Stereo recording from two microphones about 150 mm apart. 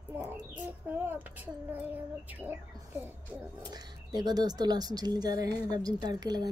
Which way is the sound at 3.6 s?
25° right (ahead or behind).